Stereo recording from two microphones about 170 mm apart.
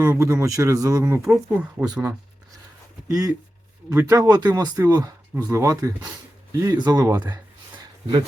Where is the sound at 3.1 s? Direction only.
20° right (ahead or behind).